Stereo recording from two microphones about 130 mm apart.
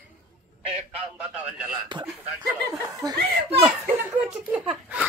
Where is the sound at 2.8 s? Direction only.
30° right (ahead or behind).